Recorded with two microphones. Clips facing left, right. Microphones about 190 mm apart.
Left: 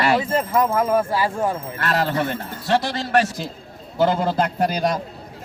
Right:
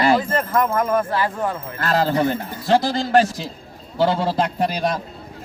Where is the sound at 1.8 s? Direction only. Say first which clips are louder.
Right 3 dB; 35° right (ahead or behind).